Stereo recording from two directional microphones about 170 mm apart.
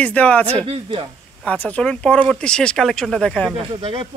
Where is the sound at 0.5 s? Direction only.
35° right (ahead or behind).